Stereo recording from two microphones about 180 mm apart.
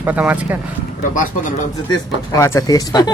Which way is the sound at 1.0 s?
45° left (ahead or behind).